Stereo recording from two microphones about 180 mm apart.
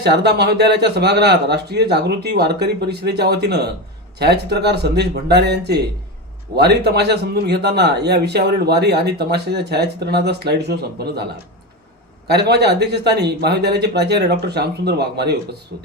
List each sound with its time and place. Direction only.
0.0 s a man's voice: 70° right (ahead or behind)
12.3 s speech: 65° right (ahead or behind)